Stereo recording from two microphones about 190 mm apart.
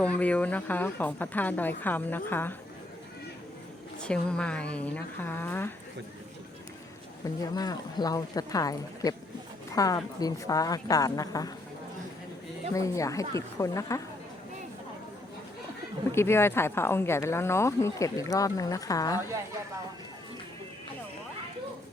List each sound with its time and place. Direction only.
0.0 s speech: 5° left (ahead or behind)
4.0 s speech: 5° left (ahead or behind)
7.5 s a woman's voice: 20° left (ahead or behind)
12.7 s speech: 15° left (ahead or behind)
16.1 s speech: 10° left (ahead or behind)